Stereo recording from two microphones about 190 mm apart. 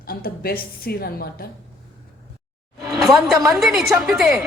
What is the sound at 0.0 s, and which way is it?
A woman's voice, 50° left (ahead or behind).